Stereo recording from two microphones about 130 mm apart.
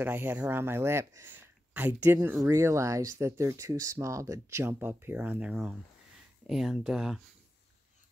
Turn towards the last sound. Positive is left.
turn(degrees=-5)  # may be behind; listen again after turning